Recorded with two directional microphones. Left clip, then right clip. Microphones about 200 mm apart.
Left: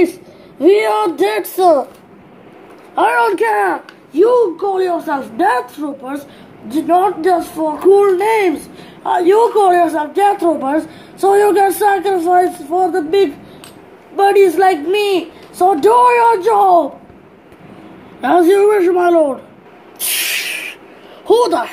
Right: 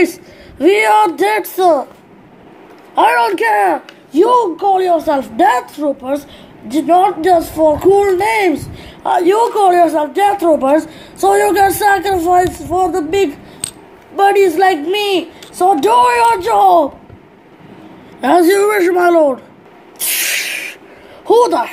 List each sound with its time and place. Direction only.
0.6 s speech: 10° right (ahead or behind)
3.3 s speech: 30° right (ahead or behind)
6.7 s speech: 30° right (ahead or behind)
18.2 s speech: 25° right (ahead or behind)
19.0 s speech: 15° right (ahead or behind)